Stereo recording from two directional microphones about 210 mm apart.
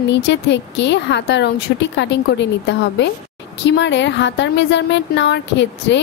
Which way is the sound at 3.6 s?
55° left (ahead or behind).